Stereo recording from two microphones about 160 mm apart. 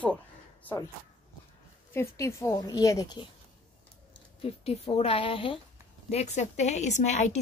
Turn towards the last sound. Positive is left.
turn(degrees=45)  # may be behind; listen again after turning